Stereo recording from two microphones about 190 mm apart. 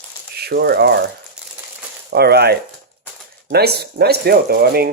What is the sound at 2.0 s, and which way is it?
Speech, 60° right (ahead or behind).